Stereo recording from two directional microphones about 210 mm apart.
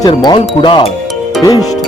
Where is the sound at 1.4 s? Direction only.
15° left (ahead or behind).